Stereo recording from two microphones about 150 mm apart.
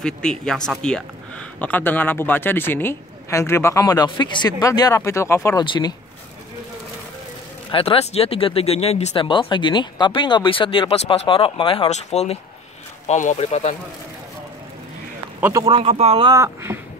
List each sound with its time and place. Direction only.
0.0 s speech: 5° left (ahead or behind); by 5.9 s 30° left (ahead or behind)
7.7 s speech: 40° left (ahead or behind)
9.1 s speech: 35° left (ahead or behind)
11.9 s speech: 45° left (ahead or behind)
15.6 s speech: 35° right (ahead or behind)
16.3 s speech: 20° right (ahead or behind)